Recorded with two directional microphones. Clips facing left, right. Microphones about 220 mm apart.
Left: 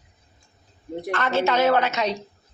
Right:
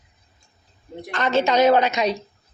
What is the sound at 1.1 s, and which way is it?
A woman's voice, 15° right (ahead or behind).